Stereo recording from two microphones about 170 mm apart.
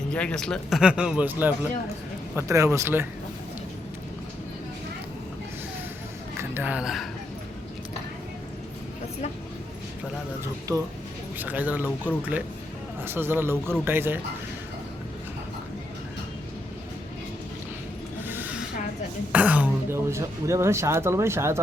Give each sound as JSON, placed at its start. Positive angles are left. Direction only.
{"t": 0.1, "sound": "speech", "side_deg": 5}
{"t": 6.5, "sound": "speech", "side_deg": -10}
{"t": 11.3, "sound": "speech", "side_deg": -10}
{"t": 18.3, "sound": "a sound", "side_deg": -10}
{"t": 19.3, "sound": "speech", "side_deg": -10}